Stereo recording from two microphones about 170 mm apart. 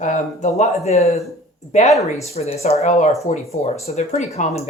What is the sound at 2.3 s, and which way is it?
Speech, 40° left (ahead or behind).